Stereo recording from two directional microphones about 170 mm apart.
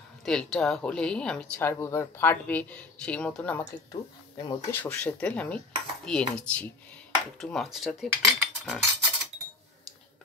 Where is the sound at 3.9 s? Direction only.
25° left (ahead or behind).